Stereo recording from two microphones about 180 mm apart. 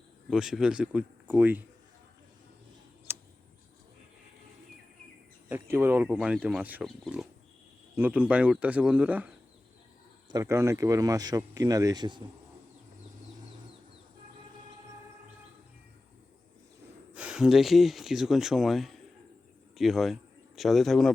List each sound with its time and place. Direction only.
0.3 s speech: centre (ahead or behind)
3.1 s tick: 15° right (ahead or behind)
5.5 s speech: 10° right (ahead or behind)
10.3 s speech: 15° right (ahead or behind)
17.2 s speech: 5° right (ahead or behind)